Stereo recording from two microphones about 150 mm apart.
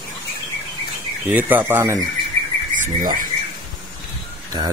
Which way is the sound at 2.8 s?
65° right (ahead or behind).